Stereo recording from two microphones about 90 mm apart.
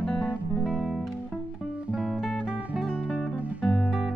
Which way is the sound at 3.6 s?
5° left (ahead or behind).